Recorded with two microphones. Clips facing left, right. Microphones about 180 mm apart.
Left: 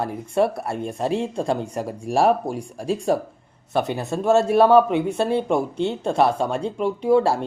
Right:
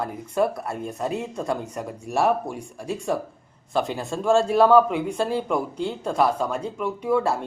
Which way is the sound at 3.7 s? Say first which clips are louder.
Left 2 dB; 20° left (ahead or behind).